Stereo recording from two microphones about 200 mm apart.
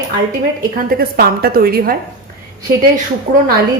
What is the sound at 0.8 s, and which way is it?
A woman's voice, 45° right (ahead or behind).